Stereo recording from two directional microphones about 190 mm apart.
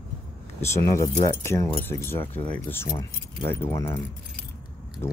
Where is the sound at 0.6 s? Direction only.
15° left (ahead or behind).